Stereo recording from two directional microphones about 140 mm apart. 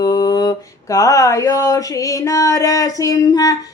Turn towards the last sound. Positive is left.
turn(degrees=25)  # may be behind; listen again after turning